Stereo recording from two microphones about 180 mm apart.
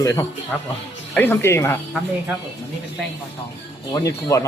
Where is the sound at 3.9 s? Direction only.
20° left (ahead or behind).